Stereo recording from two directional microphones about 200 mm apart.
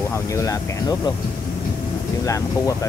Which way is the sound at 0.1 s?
15° left (ahead or behind).